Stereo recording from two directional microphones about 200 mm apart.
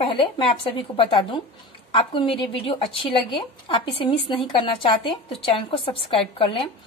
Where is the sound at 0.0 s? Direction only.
25° left (ahead or behind).